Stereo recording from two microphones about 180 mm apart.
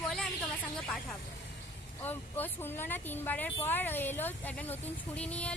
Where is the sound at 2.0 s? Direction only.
10° left (ahead or behind).